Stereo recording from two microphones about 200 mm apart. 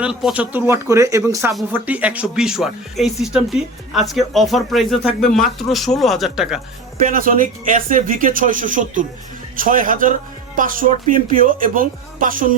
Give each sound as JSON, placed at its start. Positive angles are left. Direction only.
{"t": 0.0, "sound": "speech", "side_deg": -5}
{"t": 7.0, "sound": "a man's voice", "side_deg": -45}